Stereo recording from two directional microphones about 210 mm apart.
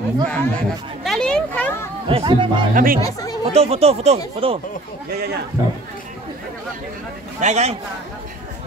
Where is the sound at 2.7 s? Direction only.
45° right (ahead or behind).